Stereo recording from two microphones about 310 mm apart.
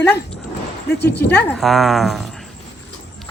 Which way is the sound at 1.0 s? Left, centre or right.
Left.